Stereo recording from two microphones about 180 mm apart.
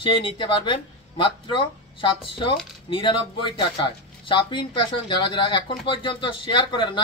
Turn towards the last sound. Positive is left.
turn(degrees=25)  # may be behind; listen again after turning